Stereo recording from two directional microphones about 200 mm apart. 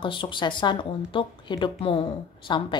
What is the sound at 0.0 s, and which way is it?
A woman's voice, 25° left (ahead or behind).